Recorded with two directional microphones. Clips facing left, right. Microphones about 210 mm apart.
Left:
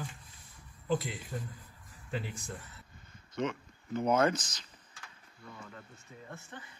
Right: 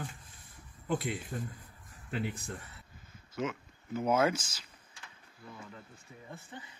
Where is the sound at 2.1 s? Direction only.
60° right (ahead or behind).